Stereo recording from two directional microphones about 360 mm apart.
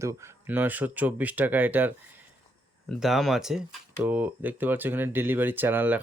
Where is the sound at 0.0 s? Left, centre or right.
Centre.